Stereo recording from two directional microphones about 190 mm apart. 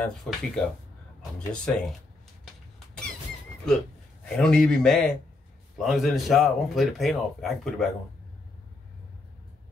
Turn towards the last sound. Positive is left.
turn(degrees=0)  # may be behind; listen again after turning